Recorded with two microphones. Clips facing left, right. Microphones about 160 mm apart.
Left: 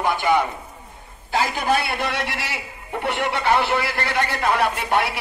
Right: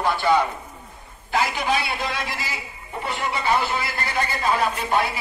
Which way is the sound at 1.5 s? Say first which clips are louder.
Left 2 dB; 55° left (ahead or behind).